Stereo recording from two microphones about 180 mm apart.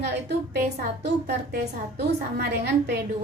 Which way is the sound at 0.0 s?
65° right (ahead or behind).